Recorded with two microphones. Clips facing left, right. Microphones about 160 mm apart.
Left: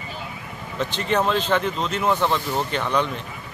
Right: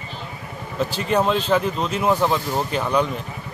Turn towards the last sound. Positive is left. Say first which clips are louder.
# right 2 dB
turn(degrees=-5)  # may be behind; listen again after turning